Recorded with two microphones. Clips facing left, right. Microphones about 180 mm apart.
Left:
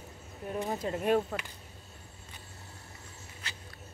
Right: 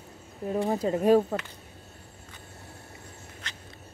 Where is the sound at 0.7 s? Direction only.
35° right (ahead or behind).